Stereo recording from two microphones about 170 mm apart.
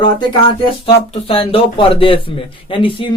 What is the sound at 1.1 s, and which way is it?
Speech, 35° left (ahead or behind).